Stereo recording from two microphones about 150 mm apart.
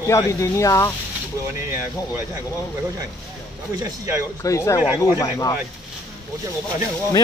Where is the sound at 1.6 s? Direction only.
15° right (ahead or behind).